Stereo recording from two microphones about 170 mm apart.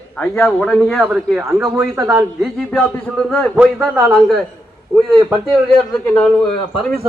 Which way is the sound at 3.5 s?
10° right (ahead or behind).